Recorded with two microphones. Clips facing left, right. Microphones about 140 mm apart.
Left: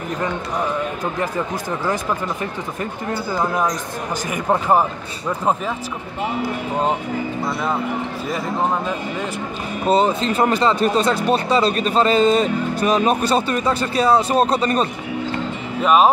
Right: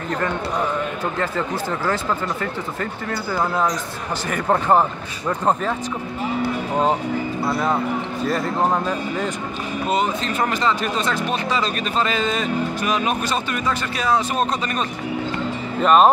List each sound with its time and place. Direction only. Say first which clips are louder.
1.9 s speech: left 1 dB; 20° left (ahead or behind)
9.8 s speech: left 6 dB; 30° left (ahead or behind)
15.8 s speech: even; 5° left (ahead or behind)